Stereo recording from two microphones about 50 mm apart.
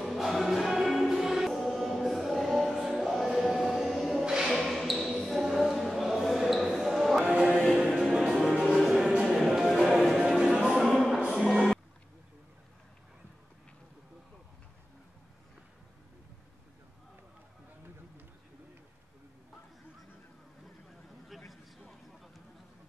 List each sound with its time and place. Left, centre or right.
0.0 s music: centre
4.2 s music: centre
4.5 s basketball bounce: centre
7.6 s music: centre
9.1 s music: right
9.4 s music: centre
10.4 s music: centre
11.2 s music: centre
21.3 s a sound: centre